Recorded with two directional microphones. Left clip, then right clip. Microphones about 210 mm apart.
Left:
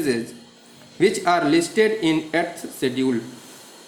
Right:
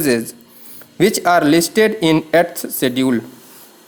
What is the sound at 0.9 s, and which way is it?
Speech, 50° right (ahead or behind).